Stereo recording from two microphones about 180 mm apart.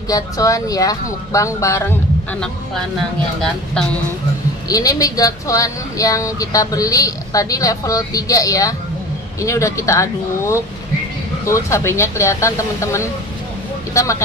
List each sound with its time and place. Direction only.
0.1 s speech: 20° left (ahead or behind)
3.3 s speech: 5° left (ahead or behind)
4.6 s speech: 20° left (ahead or behind)